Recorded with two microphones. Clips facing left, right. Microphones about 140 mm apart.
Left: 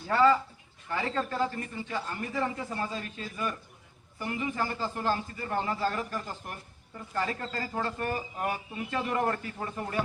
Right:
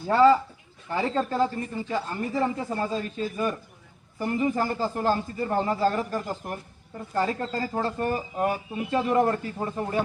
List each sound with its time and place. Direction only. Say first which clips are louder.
0.1 s a man's voice: right 5 dB; 25° right (ahead or behind)